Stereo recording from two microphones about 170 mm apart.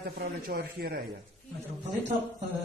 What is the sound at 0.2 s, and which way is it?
Speech, 60° right (ahead or behind).